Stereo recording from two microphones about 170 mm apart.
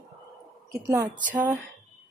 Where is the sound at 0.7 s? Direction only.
20° right (ahead or behind).